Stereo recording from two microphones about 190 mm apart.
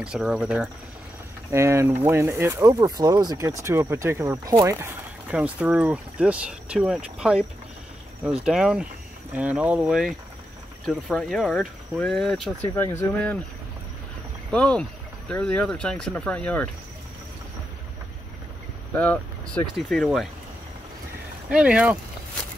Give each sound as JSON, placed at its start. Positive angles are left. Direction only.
{"t": 0.0, "sound": "speech", "side_deg": -5}
{"t": 8.5, "sound": "speech", "side_deg": -5}
{"t": 14.5, "sound": "speech", "side_deg": 5}
{"t": 18.9, "sound": "speech", "side_deg": 5}
{"t": 21.5, "sound": "speech", "side_deg": -5}